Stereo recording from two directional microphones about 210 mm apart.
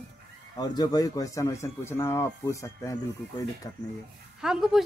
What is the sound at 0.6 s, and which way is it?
Speech, 20° left (ahead or behind).